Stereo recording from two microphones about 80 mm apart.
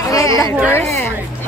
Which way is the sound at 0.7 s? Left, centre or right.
Left.